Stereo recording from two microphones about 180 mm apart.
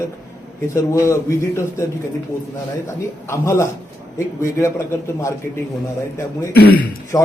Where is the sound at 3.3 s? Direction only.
15° left (ahead or behind).